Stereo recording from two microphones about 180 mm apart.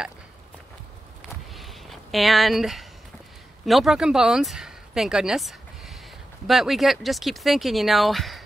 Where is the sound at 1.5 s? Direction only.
Centre (ahead or behind).